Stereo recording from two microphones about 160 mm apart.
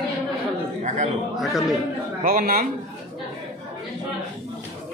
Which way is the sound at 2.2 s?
60° right (ahead or behind).